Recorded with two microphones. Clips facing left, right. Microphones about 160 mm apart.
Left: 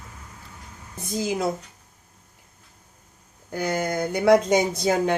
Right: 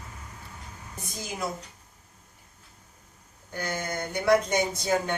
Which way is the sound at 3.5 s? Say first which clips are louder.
Left 7 dB; 85° left.